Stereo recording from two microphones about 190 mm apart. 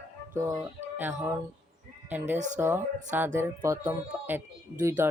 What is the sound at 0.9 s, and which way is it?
Speech, 10° right (ahead or behind).